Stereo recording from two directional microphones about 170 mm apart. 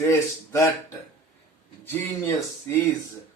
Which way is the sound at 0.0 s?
15° left (ahead or behind).